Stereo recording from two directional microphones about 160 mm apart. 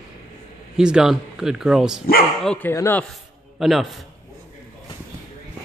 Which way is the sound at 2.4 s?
5° left (ahead or behind).